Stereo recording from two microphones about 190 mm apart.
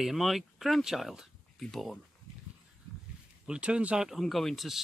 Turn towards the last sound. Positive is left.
turn(degrees=0)  # may be behind; listen again after turning